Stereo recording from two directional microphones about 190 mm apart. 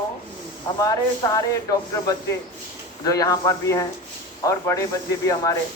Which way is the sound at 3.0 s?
20° left (ahead or behind).